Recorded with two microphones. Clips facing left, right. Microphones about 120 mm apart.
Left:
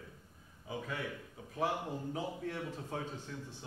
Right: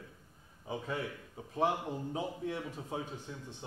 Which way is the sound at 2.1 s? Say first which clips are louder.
Right 4 dB; 20° right (ahead or behind).